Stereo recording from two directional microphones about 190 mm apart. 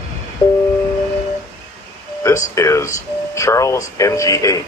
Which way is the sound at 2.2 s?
15° left (ahead or behind).